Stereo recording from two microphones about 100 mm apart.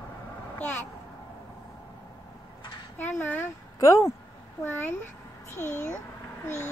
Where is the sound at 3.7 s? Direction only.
30° left (ahead or behind).